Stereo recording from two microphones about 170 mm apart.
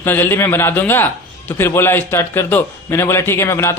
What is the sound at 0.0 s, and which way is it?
A man's voice, 10° left (ahead or behind).